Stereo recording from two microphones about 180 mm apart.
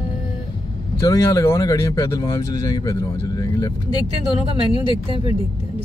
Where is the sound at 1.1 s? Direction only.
15° left (ahead or behind).